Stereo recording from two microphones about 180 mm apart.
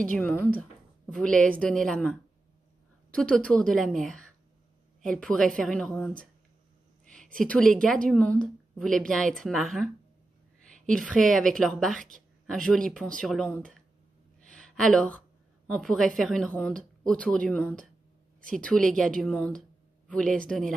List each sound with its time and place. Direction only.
0.1 s a woman's voice: 10° left (ahead or behind)
3.2 s a woman's voice: 5° left (ahead or behind)
10.9 s a woman's voice: 5° left (ahead or behind)
14.5 s a sound: 5° left (ahead or behind)
15.6 s a woman's voice: 5° left (ahead or behind)